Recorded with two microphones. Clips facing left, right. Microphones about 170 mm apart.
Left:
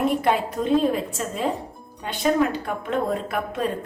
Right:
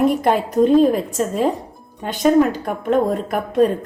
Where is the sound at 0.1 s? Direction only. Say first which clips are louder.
Right 4 dB; 40° right (ahead or behind).